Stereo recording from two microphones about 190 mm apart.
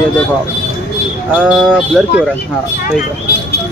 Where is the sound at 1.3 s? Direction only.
5° right (ahead or behind).